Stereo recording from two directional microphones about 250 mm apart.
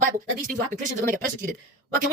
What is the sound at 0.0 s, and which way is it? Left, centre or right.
Speech, right.